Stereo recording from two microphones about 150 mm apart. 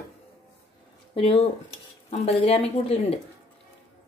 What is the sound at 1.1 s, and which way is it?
Speech, 40° left (ahead or behind).